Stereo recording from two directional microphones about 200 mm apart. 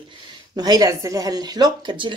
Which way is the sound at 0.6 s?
20° right (ahead or behind).